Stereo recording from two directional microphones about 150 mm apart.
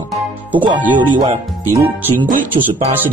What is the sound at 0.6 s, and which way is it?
Speech, 30° right (ahead or behind).